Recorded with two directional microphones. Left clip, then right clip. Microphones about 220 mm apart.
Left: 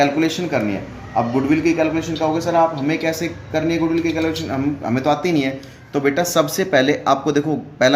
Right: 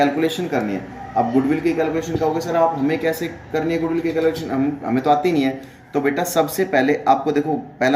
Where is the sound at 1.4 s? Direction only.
25° left (ahead or behind).